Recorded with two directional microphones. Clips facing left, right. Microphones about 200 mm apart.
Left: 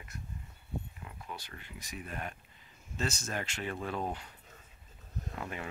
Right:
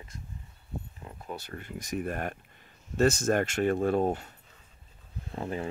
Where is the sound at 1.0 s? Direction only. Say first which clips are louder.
Right 6 dB; 40° right (ahead or behind).